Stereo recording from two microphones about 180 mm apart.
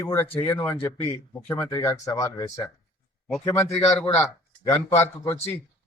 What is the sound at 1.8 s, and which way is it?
A man's voice, 15° left (ahead or behind).